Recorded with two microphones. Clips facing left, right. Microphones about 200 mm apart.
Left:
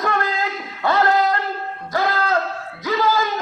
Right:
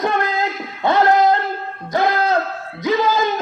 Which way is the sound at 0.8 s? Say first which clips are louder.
Right 3 dB; 20° right (ahead or behind).